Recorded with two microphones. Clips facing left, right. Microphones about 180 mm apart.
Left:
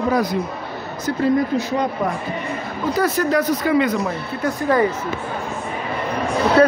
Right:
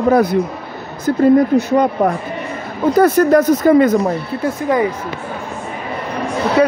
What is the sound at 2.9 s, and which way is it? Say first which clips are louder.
Speech: right 8 dB; 50° right (ahead or behind).